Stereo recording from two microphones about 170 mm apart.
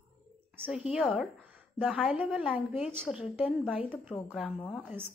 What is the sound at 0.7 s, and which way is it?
A woman's voice, 5° right (ahead or behind).